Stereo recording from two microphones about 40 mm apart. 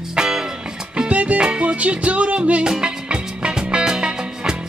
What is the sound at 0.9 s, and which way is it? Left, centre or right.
Music, right.